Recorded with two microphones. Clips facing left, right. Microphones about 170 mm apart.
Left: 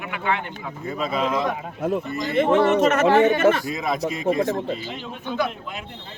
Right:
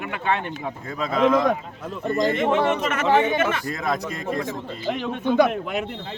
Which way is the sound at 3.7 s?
10° left (ahead or behind).